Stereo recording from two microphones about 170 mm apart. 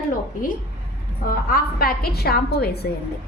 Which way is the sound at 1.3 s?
60° left (ahead or behind).